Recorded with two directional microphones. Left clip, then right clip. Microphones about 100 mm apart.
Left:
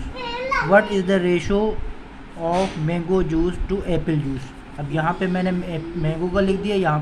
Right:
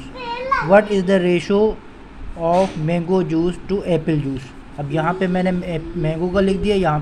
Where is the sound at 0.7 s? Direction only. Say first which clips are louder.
Right 3 dB; 35° right (ahead or behind).